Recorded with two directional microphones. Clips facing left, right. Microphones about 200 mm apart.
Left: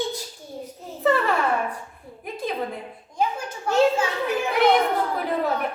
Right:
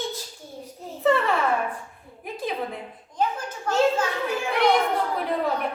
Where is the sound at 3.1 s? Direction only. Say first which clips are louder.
Left 1 dB; 10° left (ahead or behind).